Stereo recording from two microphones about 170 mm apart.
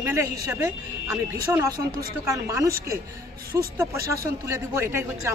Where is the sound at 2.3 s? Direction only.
20° right (ahead or behind).